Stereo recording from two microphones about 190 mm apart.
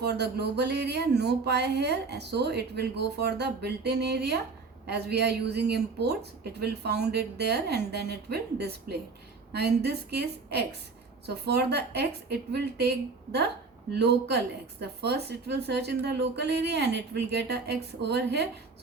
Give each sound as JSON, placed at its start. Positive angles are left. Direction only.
{"t": 0.0, "sound": "a woman's voice", "side_deg": -60}
{"t": 14.0, "sound": "a woman's voice", "side_deg": -60}